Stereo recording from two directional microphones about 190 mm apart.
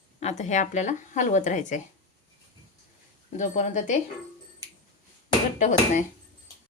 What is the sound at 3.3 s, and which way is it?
Speech, 40° left (ahead or behind).